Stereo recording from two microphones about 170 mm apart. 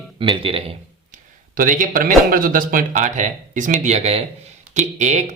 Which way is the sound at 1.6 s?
55° right (ahead or behind).